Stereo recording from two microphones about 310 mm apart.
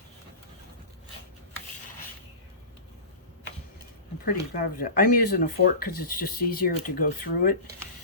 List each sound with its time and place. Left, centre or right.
4.3 s speech: left